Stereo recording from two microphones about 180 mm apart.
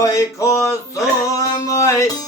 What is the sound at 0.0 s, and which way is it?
Music, 20° left (ahead or behind).